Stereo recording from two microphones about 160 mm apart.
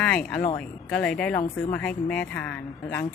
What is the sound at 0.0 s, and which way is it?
A woman's voice, 5° left (ahead or behind).